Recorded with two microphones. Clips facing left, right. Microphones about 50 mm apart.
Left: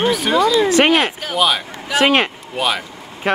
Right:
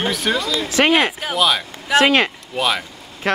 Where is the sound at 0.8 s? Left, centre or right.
Centre.